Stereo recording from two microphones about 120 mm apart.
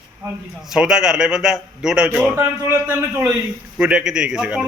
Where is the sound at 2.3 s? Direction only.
20° right (ahead or behind).